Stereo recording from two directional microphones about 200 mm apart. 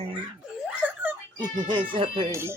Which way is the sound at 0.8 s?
5° right (ahead or behind).